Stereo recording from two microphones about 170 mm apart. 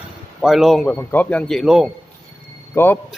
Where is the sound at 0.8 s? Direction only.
10° left (ahead or behind).